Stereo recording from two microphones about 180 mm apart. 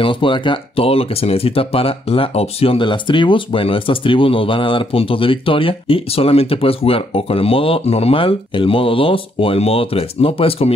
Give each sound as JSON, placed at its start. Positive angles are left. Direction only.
{"t": 0.0, "sound": "speech", "side_deg": 25}